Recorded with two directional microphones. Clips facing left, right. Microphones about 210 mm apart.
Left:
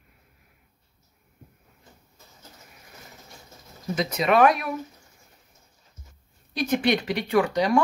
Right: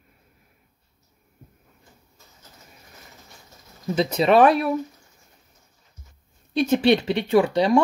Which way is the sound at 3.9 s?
30° right (ahead or behind).